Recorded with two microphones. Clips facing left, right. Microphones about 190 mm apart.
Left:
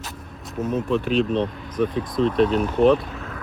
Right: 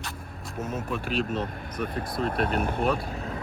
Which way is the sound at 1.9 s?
50° right (ahead or behind).